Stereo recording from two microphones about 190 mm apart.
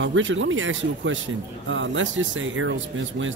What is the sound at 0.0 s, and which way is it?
Speech, 85° right.